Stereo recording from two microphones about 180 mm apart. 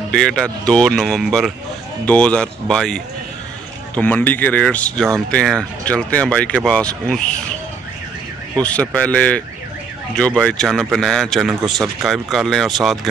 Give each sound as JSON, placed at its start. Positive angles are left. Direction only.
{"t": 0.1, "sound": "speech", "side_deg": 5}
{"t": 8.6, "sound": "speech", "side_deg": 5}